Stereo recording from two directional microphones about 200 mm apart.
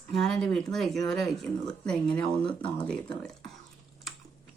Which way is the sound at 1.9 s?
5° left (ahead or behind).